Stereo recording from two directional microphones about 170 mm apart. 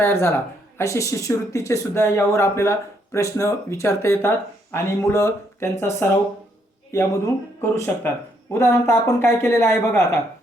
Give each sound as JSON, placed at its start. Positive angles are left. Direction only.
{"t": 0.0, "sound": "speech", "side_deg": 15}